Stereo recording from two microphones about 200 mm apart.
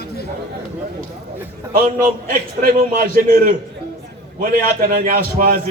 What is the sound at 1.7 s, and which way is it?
A man's voice, 45° right (ahead or behind).